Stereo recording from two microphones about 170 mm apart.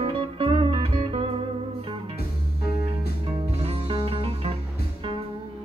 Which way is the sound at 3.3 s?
35° right (ahead or behind).